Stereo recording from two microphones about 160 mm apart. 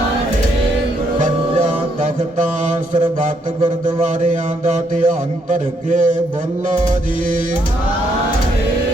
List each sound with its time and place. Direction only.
4.0 s a man's voice: 50° right (ahead or behind)